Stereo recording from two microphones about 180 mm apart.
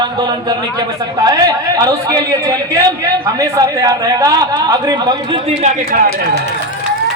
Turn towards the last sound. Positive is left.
turn(degrees=-45)  # may be behind; listen again after turning